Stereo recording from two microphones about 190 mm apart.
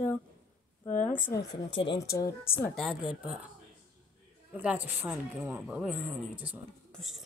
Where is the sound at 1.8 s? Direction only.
25° left (ahead or behind).